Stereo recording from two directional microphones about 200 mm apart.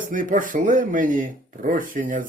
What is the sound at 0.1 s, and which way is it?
Speech, 40° right (ahead or behind).